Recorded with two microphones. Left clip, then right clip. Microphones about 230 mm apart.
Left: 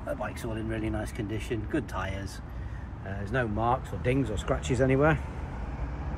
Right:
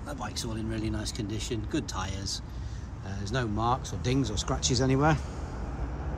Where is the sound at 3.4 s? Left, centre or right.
Centre.